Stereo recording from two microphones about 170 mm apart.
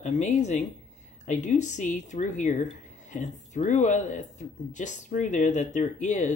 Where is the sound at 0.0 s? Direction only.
45° left (ahead or behind).